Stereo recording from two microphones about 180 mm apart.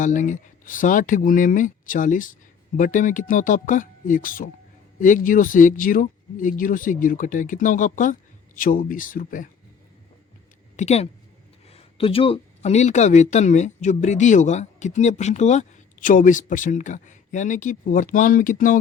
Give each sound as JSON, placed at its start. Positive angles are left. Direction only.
{"t": 0.0, "sound": "speech", "side_deg": 45}
{"t": 10.8, "sound": "speech", "side_deg": 35}